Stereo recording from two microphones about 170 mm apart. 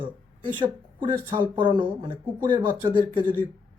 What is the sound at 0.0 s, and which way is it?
Speech, 30° right (ahead or behind).